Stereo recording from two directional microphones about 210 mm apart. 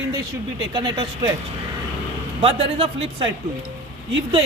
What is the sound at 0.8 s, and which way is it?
Speech, 20° right (ahead or behind).